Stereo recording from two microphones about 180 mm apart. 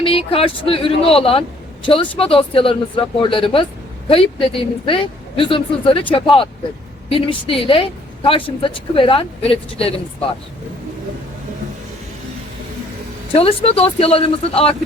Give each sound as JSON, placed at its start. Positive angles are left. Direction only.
{"t": 0.0, "sound": "a woman's voice", "side_deg": 30}
{"t": 13.3, "sound": "a woman's voice", "side_deg": 30}